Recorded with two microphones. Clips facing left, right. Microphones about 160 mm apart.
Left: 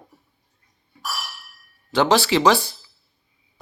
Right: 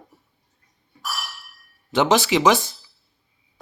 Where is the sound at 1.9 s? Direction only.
20° right (ahead or behind).